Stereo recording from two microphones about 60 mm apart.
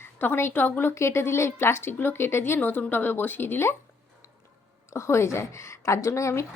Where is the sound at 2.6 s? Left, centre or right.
Left.